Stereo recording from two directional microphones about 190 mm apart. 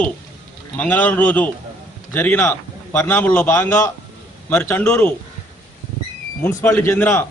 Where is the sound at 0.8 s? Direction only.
10° left (ahead or behind).